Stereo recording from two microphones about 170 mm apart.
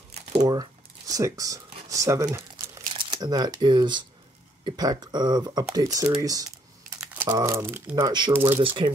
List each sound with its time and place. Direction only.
0.4 s speech: 20° right (ahead or behind)
8.0 s speech: 25° right (ahead or behind)